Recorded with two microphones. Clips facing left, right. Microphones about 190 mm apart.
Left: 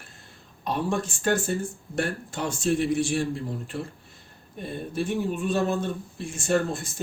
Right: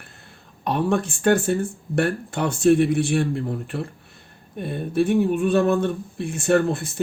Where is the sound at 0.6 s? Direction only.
60° right (ahead or behind).